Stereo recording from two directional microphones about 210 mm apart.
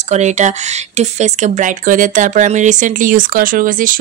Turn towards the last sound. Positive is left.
turn(degrees=-40)  # may be behind; listen again after turning